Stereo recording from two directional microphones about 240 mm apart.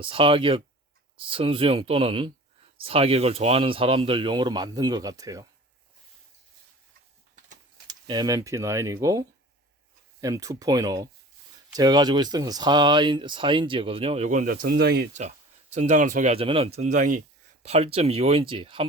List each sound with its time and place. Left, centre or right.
0.0 s speech: right
7.9 s speech: centre; by 15.0 s right
15.7 s speech: right